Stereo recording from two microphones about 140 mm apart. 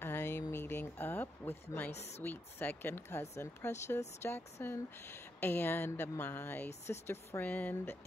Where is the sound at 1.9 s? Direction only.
50° left (ahead or behind).